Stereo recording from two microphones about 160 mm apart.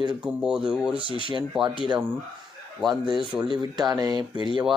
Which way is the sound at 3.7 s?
25° right (ahead or behind).